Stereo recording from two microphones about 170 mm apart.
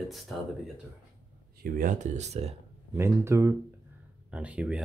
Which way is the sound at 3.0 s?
15° right (ahead or behind).